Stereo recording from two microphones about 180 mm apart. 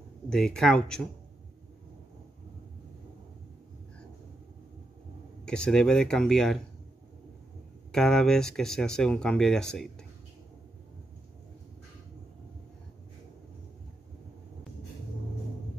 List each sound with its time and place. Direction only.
0.3 s speech: 5° left (ahead or behind)
5.4 s speech: 5° left (ahead or behind)
7.9 s speech: centre (ahead or behind)